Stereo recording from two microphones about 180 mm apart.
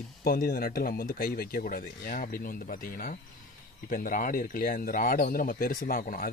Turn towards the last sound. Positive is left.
turn(degrees=50)  # may be behind; listen again after turning